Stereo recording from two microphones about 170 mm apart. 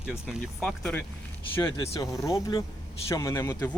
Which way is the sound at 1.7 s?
20° left (ahead or behind).